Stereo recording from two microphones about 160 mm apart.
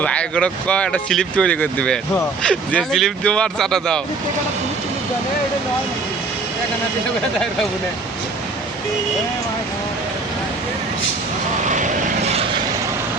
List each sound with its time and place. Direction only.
0.0 s speech: 5° left (ahead or behind)
11.7 s vehicle: 45° right (ahead or behind)